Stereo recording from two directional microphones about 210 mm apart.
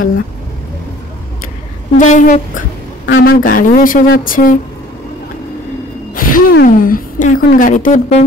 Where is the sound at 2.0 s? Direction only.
35° left (ahead or behind).